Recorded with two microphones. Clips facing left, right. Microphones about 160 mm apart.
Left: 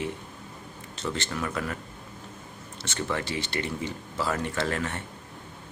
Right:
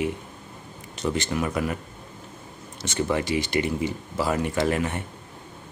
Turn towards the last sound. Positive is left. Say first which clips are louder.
# right 5 dB
turn(degrees=-15)  # may be behind; listen again after turning